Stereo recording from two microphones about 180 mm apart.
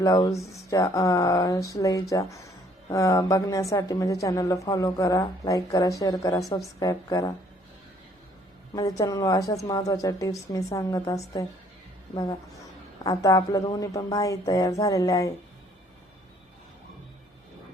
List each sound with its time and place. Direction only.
0.0 s a woman's voice: 20° left (ahead or behind)
8.7 s a woman's voice: 20° left (ahead or behind)